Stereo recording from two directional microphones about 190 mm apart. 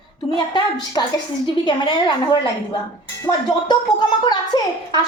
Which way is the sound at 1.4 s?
20° left (ahead or behind).